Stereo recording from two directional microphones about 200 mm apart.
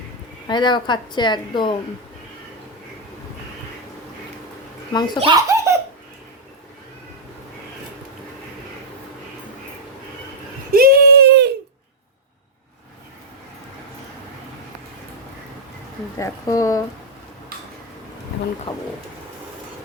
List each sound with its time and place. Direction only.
0.4 s a woman's voice: 20° left (ahead or behind)
4.9 s a woman's voice: 20° left (ahead or behind)
5.2 s belly laugh: 15° right (ahead or behind)
10.7 s a sound: 50° right (ahead or behind)
16.1 s speech: 15° left (ahead or behind)
18.7 s a woman's voice: 25° left (ahead or behind)